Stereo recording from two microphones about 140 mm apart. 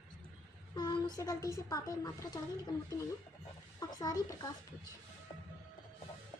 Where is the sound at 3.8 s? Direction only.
25° left (ahead or behind).